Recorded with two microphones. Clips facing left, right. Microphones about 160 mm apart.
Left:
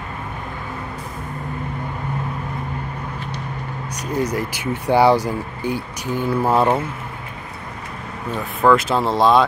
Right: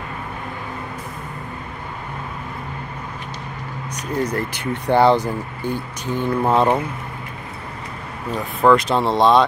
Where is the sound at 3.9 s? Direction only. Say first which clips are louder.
Even; 10° left (ahead or behind).